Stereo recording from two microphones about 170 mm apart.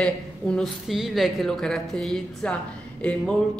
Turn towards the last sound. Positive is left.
turn(degrees=5)  # may be behind; listen again after turning